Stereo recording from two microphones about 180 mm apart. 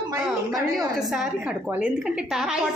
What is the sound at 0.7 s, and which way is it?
A woman's voice, 5° right (ahead or behind).